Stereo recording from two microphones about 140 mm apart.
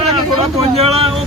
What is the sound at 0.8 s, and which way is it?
Speech, 45° right (ahead or behind).